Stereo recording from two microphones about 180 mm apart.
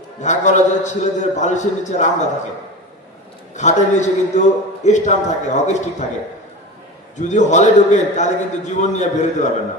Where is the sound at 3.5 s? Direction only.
40° left (ahead or behind).